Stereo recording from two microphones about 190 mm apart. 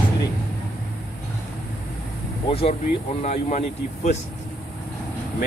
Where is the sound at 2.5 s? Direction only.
30° left (ahead or behind).